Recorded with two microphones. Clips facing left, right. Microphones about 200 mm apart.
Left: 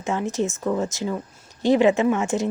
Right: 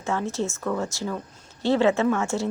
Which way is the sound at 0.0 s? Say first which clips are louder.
Left 3 dB; 15° left (ahead or behind).